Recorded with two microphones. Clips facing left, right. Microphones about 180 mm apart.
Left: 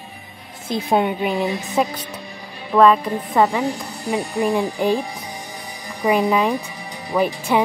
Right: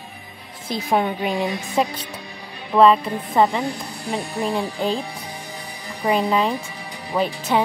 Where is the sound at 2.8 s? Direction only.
25° right (ahead or behind).